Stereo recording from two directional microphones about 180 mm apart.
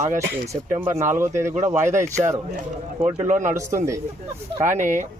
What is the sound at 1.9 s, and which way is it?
A man's voice, 45° right (ahead or behind).